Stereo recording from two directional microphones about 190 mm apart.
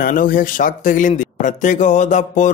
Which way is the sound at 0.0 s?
45° left (ahead or behind).